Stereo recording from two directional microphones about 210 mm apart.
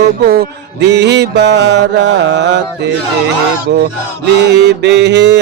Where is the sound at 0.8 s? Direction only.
55° right (ahead or behind).